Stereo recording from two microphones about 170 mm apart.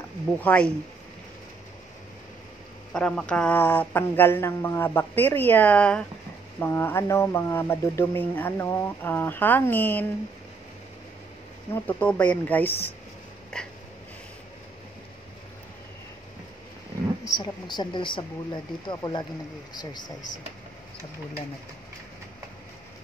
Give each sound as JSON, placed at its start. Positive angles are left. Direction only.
{"t": 0.4, "sound": "speech", "side_deg": 10}
{"t": 2.9, "sound": "speech", "side_deg": 5}
{"t": 11.7, "sound": "speech", "side_deg": 10}
{"t": 13.5, "sound": "a sound", "side_deg": 5}
{"t": 17.2, "sound": "speech", "side_deg": 25}